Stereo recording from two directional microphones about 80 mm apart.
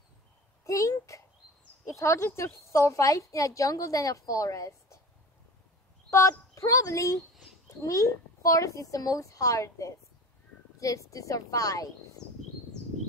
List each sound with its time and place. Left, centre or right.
0.7 s a sound: left
1.9 s a woman's voice: left
6.0 s a woman's voice: left